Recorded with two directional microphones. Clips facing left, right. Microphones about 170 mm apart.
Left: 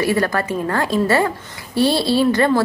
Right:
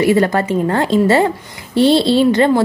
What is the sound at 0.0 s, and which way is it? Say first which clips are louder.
A woman's voice: right 5 dB; 20° right (ahead or behind).